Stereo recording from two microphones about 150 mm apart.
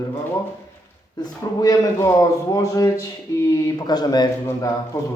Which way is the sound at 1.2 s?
25° left (ahead or behind).